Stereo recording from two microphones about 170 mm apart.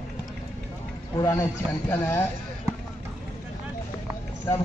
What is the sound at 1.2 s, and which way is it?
Speech, 20° left (ahead or behind).